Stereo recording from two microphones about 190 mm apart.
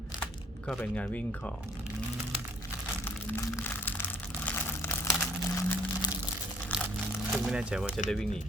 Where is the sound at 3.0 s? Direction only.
10° left (ahead or behind).